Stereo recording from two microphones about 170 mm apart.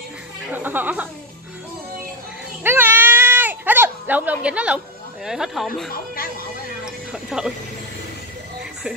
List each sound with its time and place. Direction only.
0.5 s speech: 10° right (ahead or behind)
2.6 s baby cry: 10° right (ahead or behind)
5.2 s speech: 5° right (ahead or behind)
6.8 s music: 5° right (ahead or behind)